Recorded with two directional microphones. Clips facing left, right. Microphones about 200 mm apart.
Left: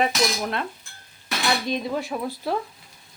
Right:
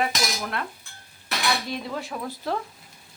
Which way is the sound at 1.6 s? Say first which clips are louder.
Left 5 dB; 20° left (ahead or behind).